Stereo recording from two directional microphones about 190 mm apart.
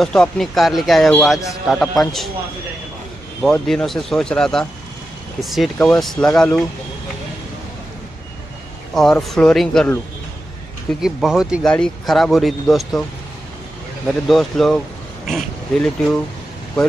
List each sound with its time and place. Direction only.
0.0 s speech: centre (ahead or behind)
3.4 s speech: centre (ahead or behind)
8.9 s speech: centre (ahead or behind)
11.0 s speech: 5° right (ahead or behind)
14.2 s speech: centre (ahead or behind)